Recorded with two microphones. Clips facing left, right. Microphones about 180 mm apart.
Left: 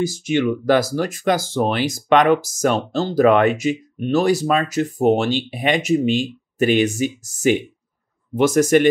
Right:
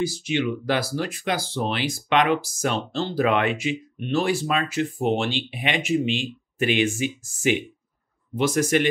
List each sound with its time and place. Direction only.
0.0 s speech: 45° left (ahead or behind)